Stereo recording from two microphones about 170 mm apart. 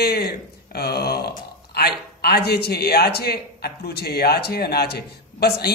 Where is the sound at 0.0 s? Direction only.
70° left (ahead or behind).